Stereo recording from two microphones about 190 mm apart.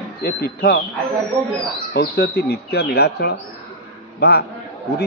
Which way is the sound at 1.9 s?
55° left (ahead or behind).